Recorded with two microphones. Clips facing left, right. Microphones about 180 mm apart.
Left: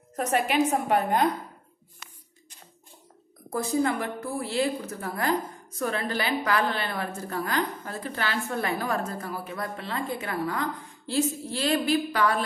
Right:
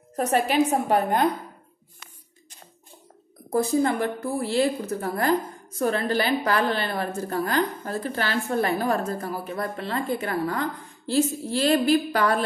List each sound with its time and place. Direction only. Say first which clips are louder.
0.1 s a woman's voice: right 3 dB; 35° right (ahead or behind)
3.5 s a woman's voice: right 4 dB; 35° right (ahead or behind)